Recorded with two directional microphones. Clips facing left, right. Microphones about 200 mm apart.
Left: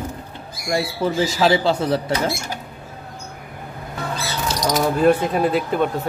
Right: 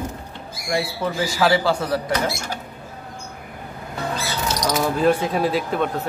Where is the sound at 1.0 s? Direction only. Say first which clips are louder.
Left 3 dB; 20° left (ahead or behind).